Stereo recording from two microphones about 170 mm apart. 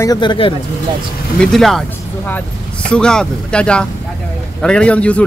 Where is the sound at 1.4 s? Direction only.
Centre (ahead or behind).